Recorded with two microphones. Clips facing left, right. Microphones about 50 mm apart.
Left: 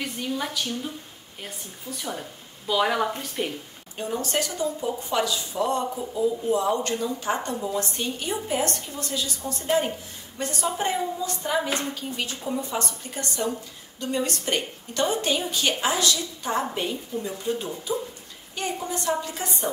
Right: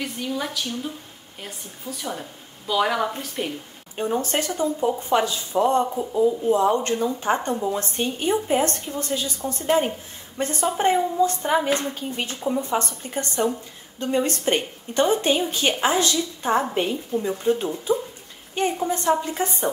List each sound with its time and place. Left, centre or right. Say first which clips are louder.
0.0 s a woman's voice: right 1 dB; centre
3.9 s a woman's voice: right 4 dB; right
12.4 s a woman's voice: right 7 dB; centre
12.6 s a woman's voice: right 5 dB; right